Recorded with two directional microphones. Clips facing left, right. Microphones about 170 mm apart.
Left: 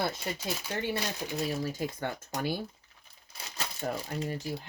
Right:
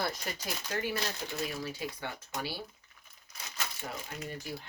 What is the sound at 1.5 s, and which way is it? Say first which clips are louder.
Speech: left 5 dB; 45° left (ahead or behind).